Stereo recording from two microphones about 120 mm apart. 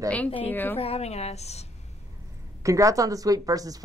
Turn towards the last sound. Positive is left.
turn(degrees=-30)  # may be behind; listen again after turning